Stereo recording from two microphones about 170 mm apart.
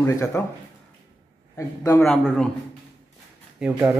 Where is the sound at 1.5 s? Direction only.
20° left (ahead or behind).